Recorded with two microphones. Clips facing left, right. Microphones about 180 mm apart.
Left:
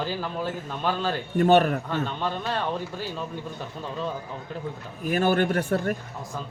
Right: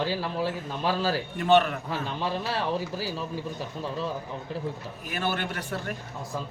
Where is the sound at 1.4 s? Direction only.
45° left (ahead or behind).